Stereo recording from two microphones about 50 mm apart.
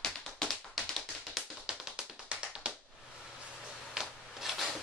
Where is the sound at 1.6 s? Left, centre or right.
Centre.